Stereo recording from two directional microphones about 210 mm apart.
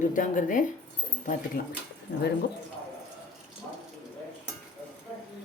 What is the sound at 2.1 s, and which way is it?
Speech, 50° left (ahead or behind).